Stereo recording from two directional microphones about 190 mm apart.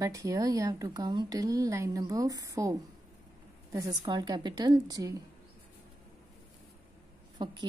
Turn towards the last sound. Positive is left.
turn(degrees=-25)  # may be behind; listen again after turning